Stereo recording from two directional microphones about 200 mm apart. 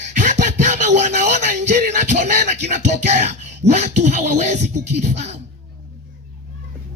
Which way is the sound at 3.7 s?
35° right (ahead or behind).